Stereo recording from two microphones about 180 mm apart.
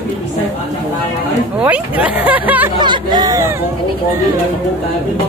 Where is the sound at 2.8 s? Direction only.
25° right (ahead or behind).